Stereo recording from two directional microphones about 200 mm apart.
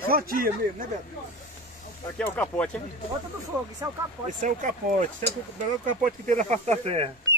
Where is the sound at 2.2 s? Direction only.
10° left (ahead or behind).